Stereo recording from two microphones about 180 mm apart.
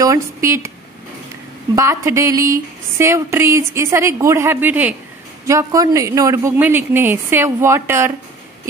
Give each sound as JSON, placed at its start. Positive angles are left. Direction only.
{"t": 0.0, "sound": "speech", "side_deg": -15}
{"t": 1.8, "sound": "a woman's voice", "side_deg": -15}